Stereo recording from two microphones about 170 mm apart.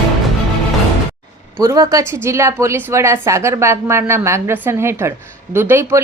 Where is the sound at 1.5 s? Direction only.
20° right (ahead or behind).